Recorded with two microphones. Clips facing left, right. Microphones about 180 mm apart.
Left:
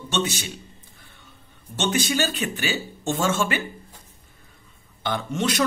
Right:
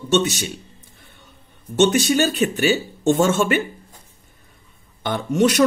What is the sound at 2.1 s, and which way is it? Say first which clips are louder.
Speech: right 7 dB; 45° right (ahead or behind).